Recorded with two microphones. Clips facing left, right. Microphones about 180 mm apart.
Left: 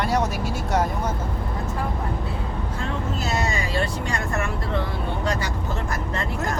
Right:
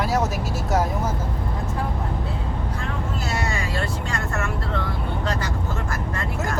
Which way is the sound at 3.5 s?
15° left (ahead or behind).